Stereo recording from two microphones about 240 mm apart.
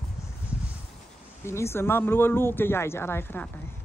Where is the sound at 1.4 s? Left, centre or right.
Centre.